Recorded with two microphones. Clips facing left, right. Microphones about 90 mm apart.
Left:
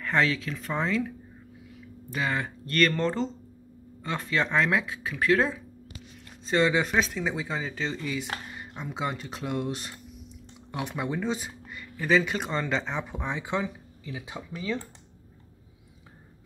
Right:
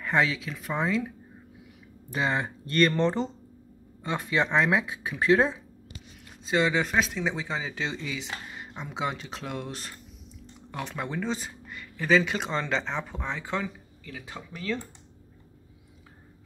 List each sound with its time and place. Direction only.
0.0 s speech: 15° right (ahead or behind)
6.4 s speech: centre (ahead or behind); by 14.8 s 15° left (ahead or behind)